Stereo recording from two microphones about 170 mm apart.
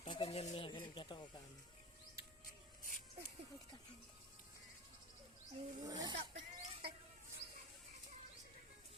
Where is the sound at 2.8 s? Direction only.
55° left (ahead or behind).